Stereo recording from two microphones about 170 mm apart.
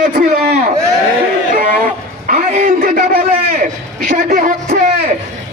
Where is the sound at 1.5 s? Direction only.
55° right (ahead or behind).